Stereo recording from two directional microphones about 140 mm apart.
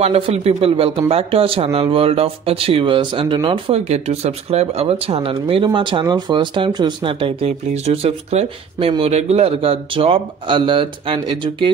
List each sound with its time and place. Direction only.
0.0 s a man's voice: 45° right (ahead or behind)